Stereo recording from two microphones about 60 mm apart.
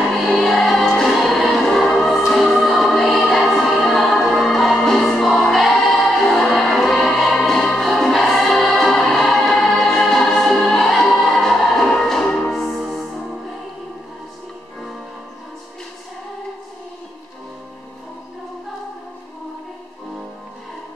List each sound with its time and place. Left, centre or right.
0.1 s music: centre
7.3 s choir: centre